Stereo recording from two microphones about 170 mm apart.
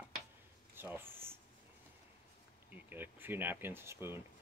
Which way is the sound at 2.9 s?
10° right (ahead or behind).